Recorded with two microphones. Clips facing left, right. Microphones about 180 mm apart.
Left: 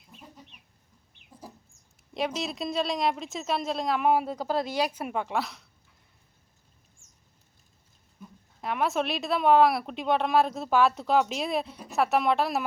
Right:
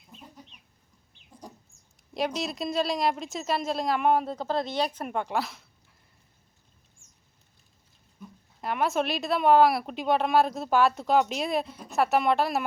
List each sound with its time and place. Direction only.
1.2 s a sound: 65° left (ahead or behind)
2.1 s speech: centre (ahead or behind)
8.6 s speech: centre (ahead or behind)